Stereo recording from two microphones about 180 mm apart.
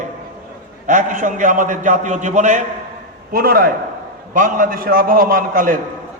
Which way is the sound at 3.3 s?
55° right (ahead or behind).